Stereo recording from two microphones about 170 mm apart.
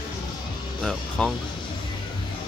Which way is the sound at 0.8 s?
5° left (ahead or behind).